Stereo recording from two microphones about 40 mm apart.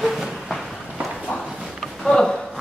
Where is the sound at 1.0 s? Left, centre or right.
Right.